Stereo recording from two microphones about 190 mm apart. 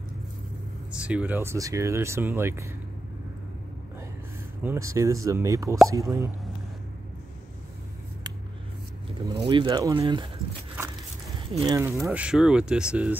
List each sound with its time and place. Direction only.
0.9 s speech: 5° right (ahead or behind)
4.6 s speech: 15° right (ahead or behind)
9.3 s speech: 25° right (ahead or behind)
11.3 s speech: 25° right (ahead or behind); by 13.1 s 5° right (ahead or behind)